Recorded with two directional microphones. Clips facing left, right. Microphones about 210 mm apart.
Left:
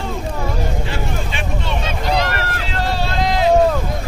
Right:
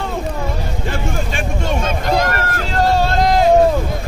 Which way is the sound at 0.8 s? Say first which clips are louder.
Right 2 dB; 45° right (ahead or behind).